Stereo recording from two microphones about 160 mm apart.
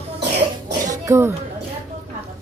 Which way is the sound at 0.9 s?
20° right (ahead or behind).